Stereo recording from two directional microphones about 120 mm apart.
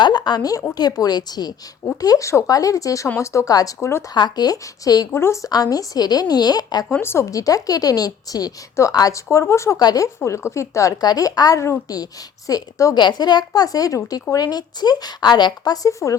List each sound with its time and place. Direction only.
0.0 s a woman's voice: 40° left (ahead or behind); by 4.0 s 20° left (ahead or behind)
4.1 s a woman's voice: 35° left (ahead or behind)
6.8 s a woman's voice: 15° left (ahead or behind)